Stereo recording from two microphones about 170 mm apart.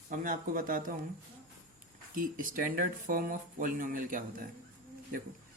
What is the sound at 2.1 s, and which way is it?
Speech, 55° right (ahead or behind).